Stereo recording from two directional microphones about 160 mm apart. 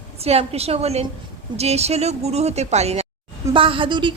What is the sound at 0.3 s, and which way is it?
A woman's voice, 40° right (ahead or behind).